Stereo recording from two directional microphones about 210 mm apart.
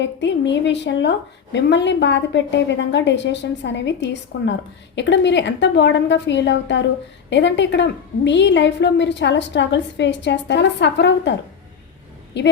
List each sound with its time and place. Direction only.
0.0 s a woman's voice: 55° left (ahead or behind)
12.4 s a woman's voice: 55° left (ahead or behind)